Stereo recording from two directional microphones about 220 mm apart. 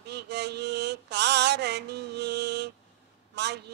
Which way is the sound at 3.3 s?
50° right (ahead or behind).